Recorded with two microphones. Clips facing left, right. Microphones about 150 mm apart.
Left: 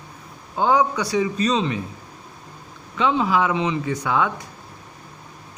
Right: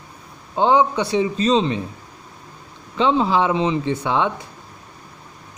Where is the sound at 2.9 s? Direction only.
30° right (ahead or behind).